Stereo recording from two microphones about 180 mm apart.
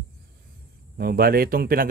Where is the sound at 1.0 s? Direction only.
55° right (ahead or behind).